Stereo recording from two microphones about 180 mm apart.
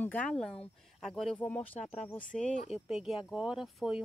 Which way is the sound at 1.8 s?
40° left (ahead or behind).